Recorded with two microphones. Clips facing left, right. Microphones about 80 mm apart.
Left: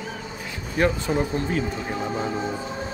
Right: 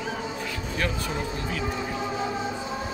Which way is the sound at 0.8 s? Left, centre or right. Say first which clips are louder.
Left 8 dB; left.